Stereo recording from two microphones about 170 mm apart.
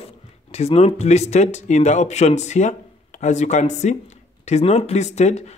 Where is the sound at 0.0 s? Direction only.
35° left (ahead or behind).